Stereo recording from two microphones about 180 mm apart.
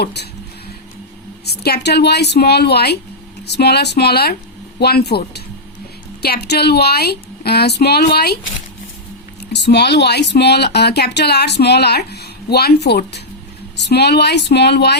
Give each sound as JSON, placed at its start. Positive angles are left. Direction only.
{"t": 0.0, "sound": "speech", "side_deg": 65}
{"t": 1.5, "sound": "speech", "side_deg": 65}
{"t": 6.5, "sound": "speech", "side_deg": 65}
{"t": 9.5, "sound": "speech", "side_deg": 70}